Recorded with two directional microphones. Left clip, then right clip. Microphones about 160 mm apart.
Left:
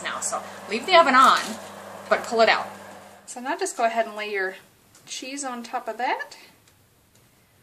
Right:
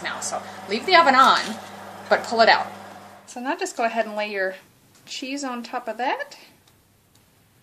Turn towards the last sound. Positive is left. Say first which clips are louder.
# right 1 dB
turn(degrees=-35)  # may be behind; listen again after turning